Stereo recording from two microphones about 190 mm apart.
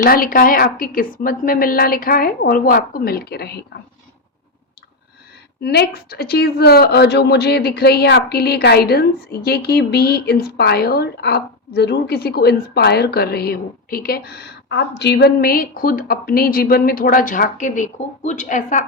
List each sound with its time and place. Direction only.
0.0 s a woman's voice: 50° left (ahead or behind)
5.5 s speech: 55° left (ahead or behind)